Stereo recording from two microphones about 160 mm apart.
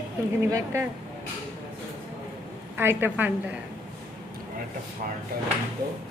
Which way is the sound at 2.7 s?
15° right (ahead or behind).